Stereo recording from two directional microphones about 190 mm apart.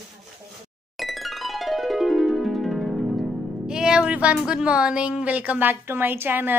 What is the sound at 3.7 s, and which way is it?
A woman's voice, 5° right (ahead or behind).